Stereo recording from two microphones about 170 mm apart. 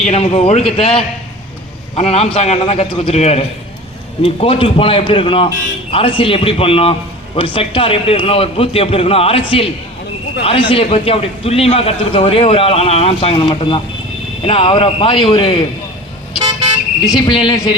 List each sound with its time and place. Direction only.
0.0 s a man's voice: 35° left (ahead or behind)
17.2 s speech: 25° left (ahead or behind)